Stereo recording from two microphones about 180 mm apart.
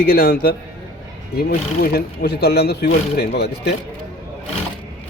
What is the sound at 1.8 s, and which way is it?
A man's voice, 60° left (ahead or behind).